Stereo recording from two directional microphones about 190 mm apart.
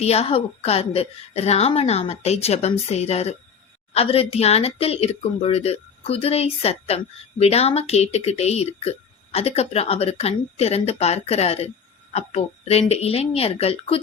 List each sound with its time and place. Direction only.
0.0 s speech: 35° left (ahead or behind)